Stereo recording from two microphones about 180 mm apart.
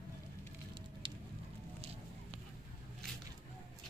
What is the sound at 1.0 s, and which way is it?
Patter, 25° right (ahead or behind).